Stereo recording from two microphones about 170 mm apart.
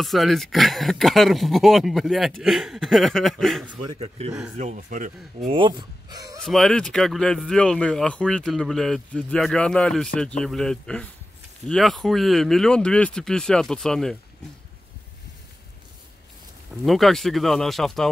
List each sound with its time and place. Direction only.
0.0 s speech: centre (ahead or behind)
4.6 s speech: 45° right (ahead or behind)
5.5 s speech: 30° right (ahead or behind)
6.4 s speech: centre (ahead or behind)
16.8 s speech: centre (ahead or behind)